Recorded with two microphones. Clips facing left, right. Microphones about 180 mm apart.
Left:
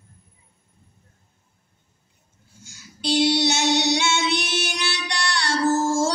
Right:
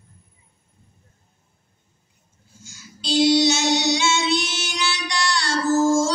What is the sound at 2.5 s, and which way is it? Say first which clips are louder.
Child singing: even; 60° left (ahead or behind).